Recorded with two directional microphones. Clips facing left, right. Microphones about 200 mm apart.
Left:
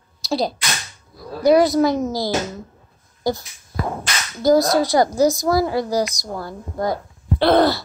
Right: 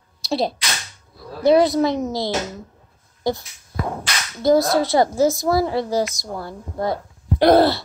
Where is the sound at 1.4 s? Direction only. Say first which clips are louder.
Left 1 dB; 25° right (ahead or behind).